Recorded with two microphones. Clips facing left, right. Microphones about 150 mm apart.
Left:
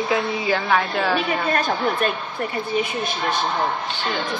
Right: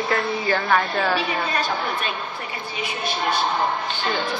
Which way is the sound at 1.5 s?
50° left (ahead or behind).